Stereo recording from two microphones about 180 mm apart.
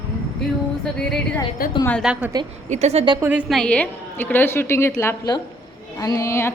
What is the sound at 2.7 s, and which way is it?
Speech, 35° right (ahead or behind).